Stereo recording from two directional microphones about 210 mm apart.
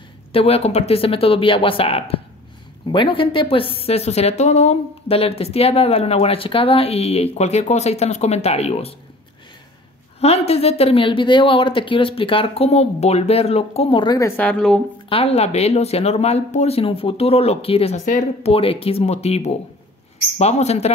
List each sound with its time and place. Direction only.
0.3 s a woman's voice: 25° left (ahead or behind)
10.2 s a woman's voice: 30° left (ahead or behind); by 14.8 s 5° left (ahead or behind)
15.0 s a woman's voice: 25° left (ahead or behind)